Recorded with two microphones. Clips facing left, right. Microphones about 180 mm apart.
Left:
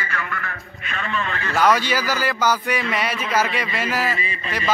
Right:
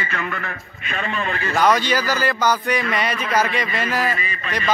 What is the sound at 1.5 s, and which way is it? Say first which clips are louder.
A man's voice: right 1 dB; 5° left (ahead or behind).